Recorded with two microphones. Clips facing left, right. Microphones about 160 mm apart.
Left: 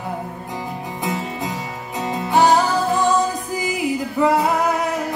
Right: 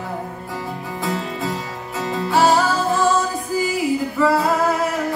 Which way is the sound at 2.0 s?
15° left (ahead or behind).